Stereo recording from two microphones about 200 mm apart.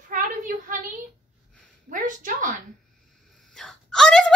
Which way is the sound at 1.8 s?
40° right (ahead or behind).